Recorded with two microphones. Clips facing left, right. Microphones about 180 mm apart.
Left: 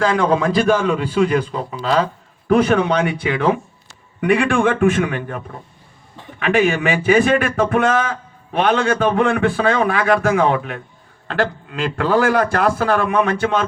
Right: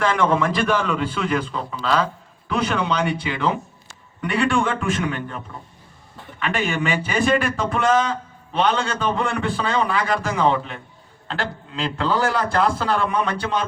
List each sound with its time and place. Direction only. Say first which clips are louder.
0.0 s a man's voice: left 3 dB; 35° left (ahead or behind)
2.5 s a man's voice: left 8 dB; 55° left (ahead or behind)
6.4 s a man's voice: left 7 dB; 60° left (ahead or behind)